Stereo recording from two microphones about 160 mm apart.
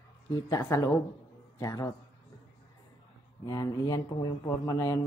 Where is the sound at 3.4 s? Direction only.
25° left (ahead or behind).